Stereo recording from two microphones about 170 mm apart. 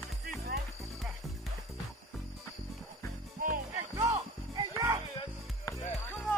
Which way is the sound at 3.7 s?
20° right (ahead or behind).